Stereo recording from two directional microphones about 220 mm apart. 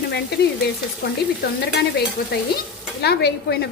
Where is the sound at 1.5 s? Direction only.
50° left (ahead or behind).